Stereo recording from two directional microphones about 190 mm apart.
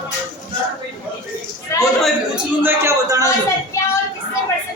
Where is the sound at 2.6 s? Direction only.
15° right (ahead or behind).